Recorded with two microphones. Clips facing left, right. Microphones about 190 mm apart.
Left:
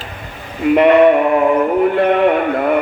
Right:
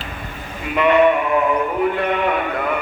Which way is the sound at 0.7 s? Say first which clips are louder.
Left 5 dB; 65° left (ahead or behind).